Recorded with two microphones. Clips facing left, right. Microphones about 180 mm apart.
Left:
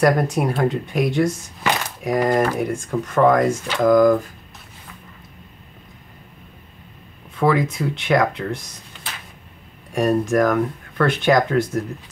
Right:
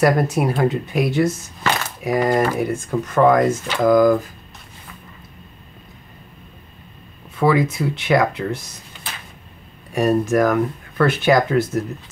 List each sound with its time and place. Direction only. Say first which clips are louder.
0.0 s speech: right 1 dB; 5° right (ahead or behind)
1.6 s a sound: even; 15° left (ahead or behind)
2.0 s speech: right 1 dB; 5° right (ahead or behind)
7.3 s speech: right 1 dB; 5° right (ahead or behind)
9.9 s speech: right 1 dB; 5° right (ahead or behind)